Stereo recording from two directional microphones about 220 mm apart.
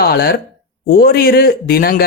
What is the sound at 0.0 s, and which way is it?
Speech, 45° left (ahead or behind).